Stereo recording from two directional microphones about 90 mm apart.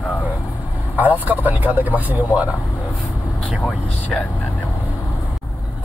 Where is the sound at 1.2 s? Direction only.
20° right (ahead or behind).